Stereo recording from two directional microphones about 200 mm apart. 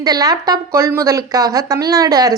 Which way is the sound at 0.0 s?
20° right (ahead or behind).